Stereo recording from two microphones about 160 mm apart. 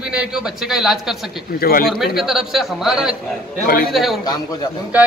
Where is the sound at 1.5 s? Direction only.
70° left (ahead or behind).